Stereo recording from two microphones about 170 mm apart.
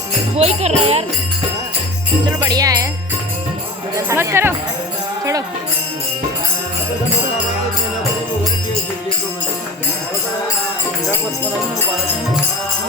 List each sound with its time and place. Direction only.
0.3 s music: 40° right (ahead or behind)
2.4 s jingle bell: 20° right (ahead or behind)
3.9 s speech: 15° right (ahead or behind)